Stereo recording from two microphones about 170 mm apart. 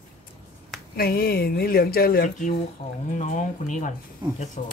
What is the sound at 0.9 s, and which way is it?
Speech, 65° left (ahead or behind).